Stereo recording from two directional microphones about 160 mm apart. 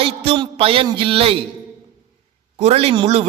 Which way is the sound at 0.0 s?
35° right (ahead or behind).